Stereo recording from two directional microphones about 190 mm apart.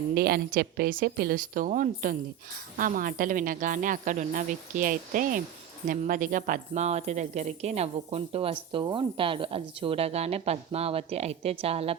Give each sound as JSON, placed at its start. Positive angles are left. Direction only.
{"t": 0.1, "sound": "a woman's voice", "side_deg": -55}